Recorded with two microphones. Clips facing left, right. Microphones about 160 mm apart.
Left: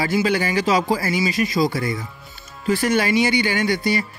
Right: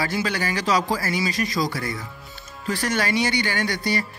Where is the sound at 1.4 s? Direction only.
5° left (ahead or behind).